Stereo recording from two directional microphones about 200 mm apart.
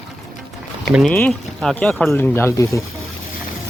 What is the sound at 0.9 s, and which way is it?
Speech, centre (ahead or behind).